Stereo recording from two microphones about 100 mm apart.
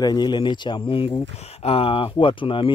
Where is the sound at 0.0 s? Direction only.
45° left (ahead or behind).